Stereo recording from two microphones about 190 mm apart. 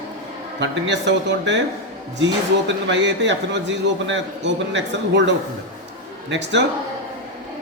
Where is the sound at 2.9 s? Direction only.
70° right (ahead or behind).